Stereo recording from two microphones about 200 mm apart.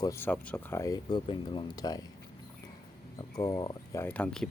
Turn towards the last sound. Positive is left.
turn(degrees=5)  # may be behind; listen again after turning